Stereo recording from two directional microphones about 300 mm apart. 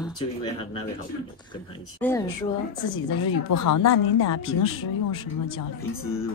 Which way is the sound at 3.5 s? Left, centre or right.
Left.